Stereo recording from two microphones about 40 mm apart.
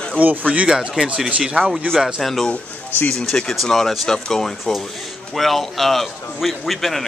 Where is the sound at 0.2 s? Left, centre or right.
Right.